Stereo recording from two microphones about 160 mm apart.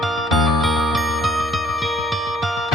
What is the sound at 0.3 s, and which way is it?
Music, centre (ahead or behind).